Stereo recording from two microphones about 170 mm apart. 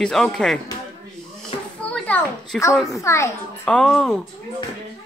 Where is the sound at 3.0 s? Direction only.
15° left (ahead or behind).